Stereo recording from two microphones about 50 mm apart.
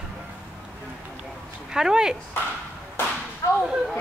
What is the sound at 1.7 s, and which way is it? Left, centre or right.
Speech, centre.